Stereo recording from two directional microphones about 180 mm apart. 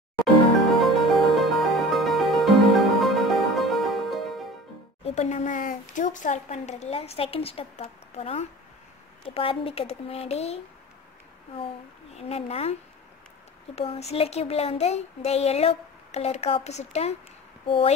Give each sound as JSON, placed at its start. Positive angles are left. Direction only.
{"t": 0.7, "sound": "music", "side_deg": 0}
{"t": 5.0, "sound": "speech", "side_deg": 40}
{"t": 12.2, "sound": "speech", "side_deg": 35}
{"t": 13.7, "sound": "speech", "side_deg": 35}